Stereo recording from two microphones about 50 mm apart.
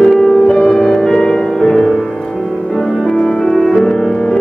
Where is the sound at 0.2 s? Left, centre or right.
Centre.